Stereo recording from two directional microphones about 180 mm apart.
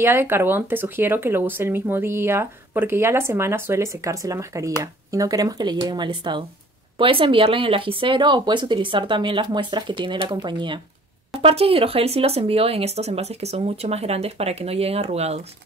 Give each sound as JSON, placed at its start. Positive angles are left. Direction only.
{"t": 0.0, "sound": "speech", "side_deg": -15}